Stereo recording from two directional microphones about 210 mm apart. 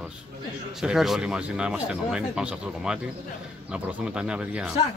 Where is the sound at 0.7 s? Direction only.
Centre (ahead or behind).